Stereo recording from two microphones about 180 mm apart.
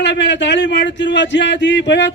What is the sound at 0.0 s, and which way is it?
Speech, 75° left (ahead or behind).